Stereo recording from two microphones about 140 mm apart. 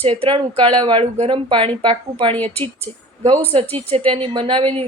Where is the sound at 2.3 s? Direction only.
10° left (ahead or behind).